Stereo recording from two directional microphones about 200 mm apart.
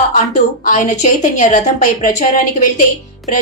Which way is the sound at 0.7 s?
40° left (ahead or behind).